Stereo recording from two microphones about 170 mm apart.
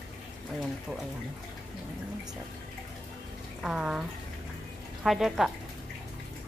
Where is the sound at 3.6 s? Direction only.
5° right (ahead or behind).